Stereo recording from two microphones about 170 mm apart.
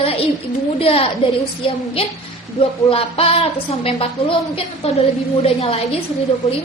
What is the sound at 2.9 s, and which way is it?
A woman's voice, 35° left (ahead or behind).